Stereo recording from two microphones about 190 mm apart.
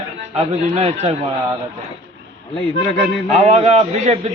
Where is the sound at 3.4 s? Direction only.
40° right (ahead or behind).